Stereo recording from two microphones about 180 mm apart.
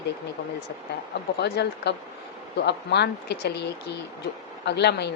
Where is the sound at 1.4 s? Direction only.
65° left (ahead or behind).